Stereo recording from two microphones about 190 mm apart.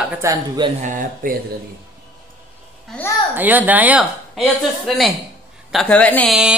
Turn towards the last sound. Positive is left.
turn(degrees=5)  # may be behind; listen again after turning